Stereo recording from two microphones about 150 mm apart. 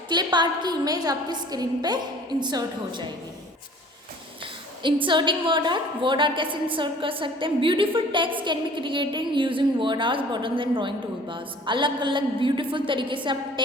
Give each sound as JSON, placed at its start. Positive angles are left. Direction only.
{"t": 0.1, "sound": "a woman's voice", "side_deg": -30}
{"t": 4.8, "sound": "a woman's voice", "side_deg": -35}